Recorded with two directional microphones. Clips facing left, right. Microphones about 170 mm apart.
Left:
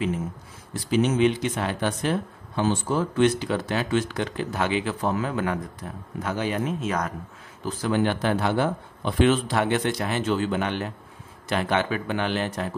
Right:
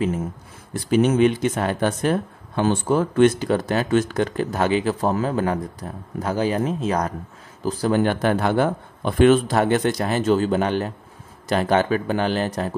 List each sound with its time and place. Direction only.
0.7 s speech: 50° right (ahead or behind)